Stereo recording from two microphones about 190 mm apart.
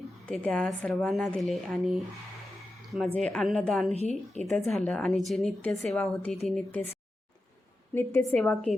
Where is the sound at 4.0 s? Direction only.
35° left (ahead or behind).